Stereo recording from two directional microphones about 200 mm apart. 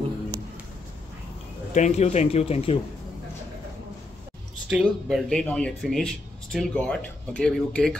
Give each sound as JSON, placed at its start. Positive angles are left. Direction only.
{"t": 1.7, "sound": "a man's voice", "side_deg": 35}
{"t": 4.6, "sound": "speech", "side_deg": 0}